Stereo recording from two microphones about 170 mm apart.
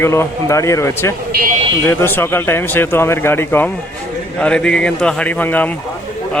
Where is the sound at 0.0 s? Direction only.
15° left (ahead or behind).